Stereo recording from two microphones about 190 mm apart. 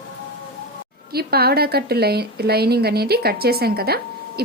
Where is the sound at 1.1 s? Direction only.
55° right (ahead or behind).